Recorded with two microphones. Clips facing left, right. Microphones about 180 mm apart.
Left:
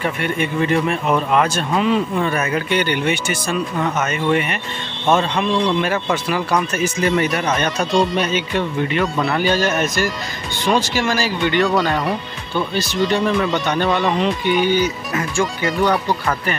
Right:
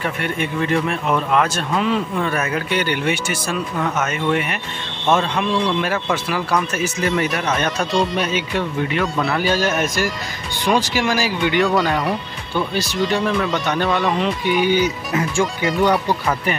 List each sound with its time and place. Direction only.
0.0 s speech: centre (ahead or behind)
14.7 s speech: 15° right (ahead or behind)
15.6 s speech: centre (ahead or behind)